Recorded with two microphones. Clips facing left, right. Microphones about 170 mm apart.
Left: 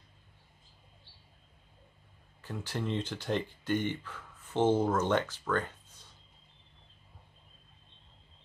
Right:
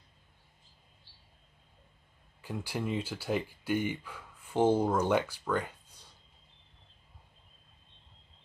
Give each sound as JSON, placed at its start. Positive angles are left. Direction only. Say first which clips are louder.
{"t": 2.4, "sound": "speech", "louder": "right 1 dB", "side_deg": -10}